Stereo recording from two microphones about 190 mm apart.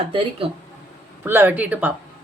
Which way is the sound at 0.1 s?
25° right (ahead or behind).